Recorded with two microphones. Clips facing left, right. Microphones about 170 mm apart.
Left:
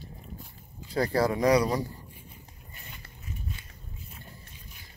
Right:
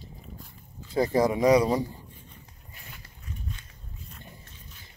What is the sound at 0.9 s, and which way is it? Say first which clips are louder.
Speech: right 2 dB; 20° right (ahead or behind).